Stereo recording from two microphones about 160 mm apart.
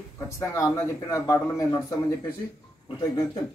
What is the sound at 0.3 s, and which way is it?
A man's voice, 20° left (ahead or behind).